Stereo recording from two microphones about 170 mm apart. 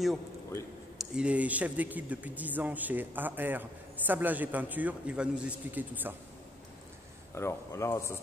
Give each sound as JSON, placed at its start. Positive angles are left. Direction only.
{"t": 0.9, "sound": "speech", "side_deg": -5}
{"t": 7.3, "sound": "speech", "side_deg": 15}